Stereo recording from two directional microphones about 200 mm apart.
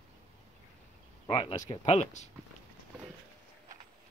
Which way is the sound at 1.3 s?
25° left (ahead or behind).